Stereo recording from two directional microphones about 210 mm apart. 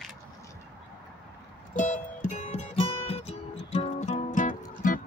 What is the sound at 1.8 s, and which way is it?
Music, 35° left (ahead or behind).